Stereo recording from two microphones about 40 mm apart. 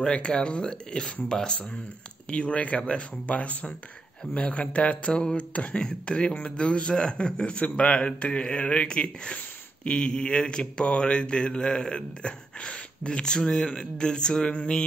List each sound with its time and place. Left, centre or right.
0.1 s speech: left
5.1 s speech: left
5.5 s speech: left